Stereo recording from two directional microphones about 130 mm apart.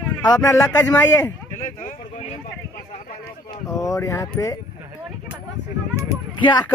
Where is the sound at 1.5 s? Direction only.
85° left.